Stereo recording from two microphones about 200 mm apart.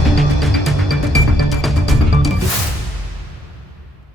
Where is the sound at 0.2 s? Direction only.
Centre (ahead or behind).